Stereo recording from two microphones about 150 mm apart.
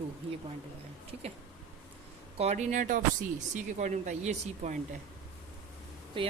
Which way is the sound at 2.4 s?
50° right (ahead or behind).